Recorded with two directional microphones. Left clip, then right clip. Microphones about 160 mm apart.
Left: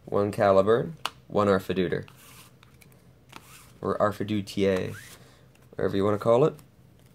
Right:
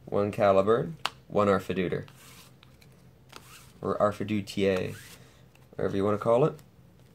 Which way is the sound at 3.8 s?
30° left (ahead or behind).